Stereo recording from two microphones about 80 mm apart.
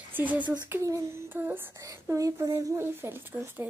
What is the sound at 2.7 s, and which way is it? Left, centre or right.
Speech, right.